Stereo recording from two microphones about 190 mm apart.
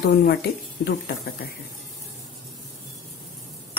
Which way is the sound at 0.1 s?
55° left (ahead or behind).